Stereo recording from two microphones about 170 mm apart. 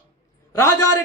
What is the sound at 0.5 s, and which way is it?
Speech, 15° left (ahead or behind).